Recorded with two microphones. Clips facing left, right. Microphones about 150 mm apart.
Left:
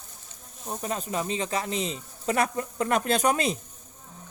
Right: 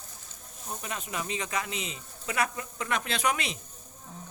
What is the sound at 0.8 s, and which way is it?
Speech, 35° left (ahead or behind).